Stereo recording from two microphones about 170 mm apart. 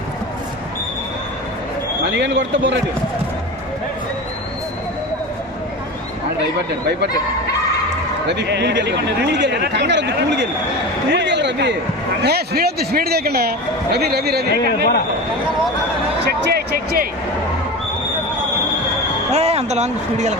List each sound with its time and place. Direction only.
2.1 s speech: 90° right
8.3 s speech: 90° right
12.2 s speech: 70° right (ahead or behind)
16.2 s music: 70° right (ahead or behind)
19.3 s speech: 40° right (ahead or behind)